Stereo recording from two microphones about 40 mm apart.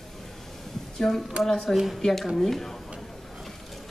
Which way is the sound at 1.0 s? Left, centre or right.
Centre.